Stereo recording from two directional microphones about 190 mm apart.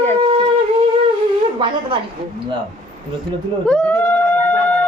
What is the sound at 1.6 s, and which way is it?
Speech, 25° right (ahead or behind).